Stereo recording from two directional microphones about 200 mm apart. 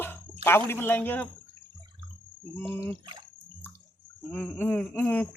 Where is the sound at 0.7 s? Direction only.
10° left (ahead or behind).